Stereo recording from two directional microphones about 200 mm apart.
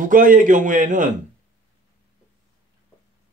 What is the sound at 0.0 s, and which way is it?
Speech, 40° right (ahead or behind).